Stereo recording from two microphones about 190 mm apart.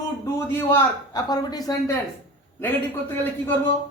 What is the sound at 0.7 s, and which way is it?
Speech, 20° left (ahead or behind).